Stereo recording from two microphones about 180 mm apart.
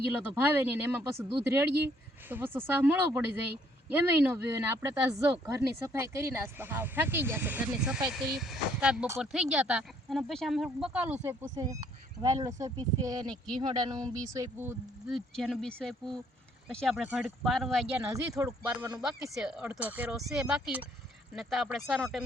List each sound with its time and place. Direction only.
0.0 s speech: 10° right (ahead or behind)
15.1 s speech: centre (ahead or behind)
18.0 s speech: 20° right (ahead or behind)
19.3 s speech: 5° right (ahead or behind)